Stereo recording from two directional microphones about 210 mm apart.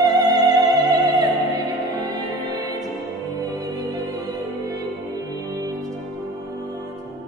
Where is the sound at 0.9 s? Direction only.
15° right (ahead or behind).